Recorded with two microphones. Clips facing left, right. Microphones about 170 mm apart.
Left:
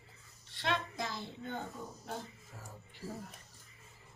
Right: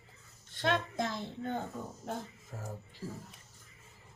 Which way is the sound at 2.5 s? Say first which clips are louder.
Right 10 dB; 45° right (ahead or behind).